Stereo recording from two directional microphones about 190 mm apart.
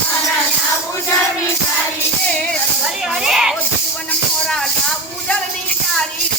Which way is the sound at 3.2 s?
5° right (ahead or behind).